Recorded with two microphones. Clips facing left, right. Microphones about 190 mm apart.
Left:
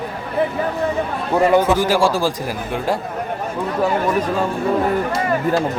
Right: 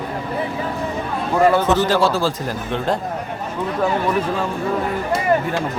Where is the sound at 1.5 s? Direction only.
10° left (ahead or behind).